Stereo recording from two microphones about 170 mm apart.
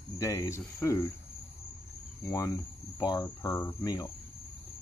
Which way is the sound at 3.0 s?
20° left (ahead or behind).